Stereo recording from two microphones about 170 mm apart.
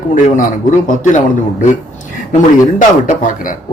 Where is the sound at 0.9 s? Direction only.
50° left (ahead or behind).